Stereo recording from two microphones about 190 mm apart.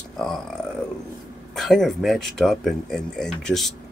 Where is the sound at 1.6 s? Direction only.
Centre (ahead or behind).